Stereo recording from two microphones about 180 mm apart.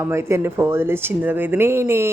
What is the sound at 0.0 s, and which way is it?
Speech, 15° right (ahead or behind).